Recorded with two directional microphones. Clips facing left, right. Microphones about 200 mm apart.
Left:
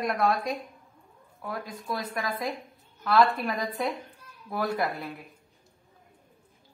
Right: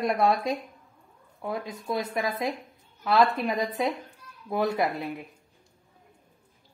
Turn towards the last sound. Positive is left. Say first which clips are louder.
# right 3 dB
turn(degrees=-20)  # may be behind; listen again after turning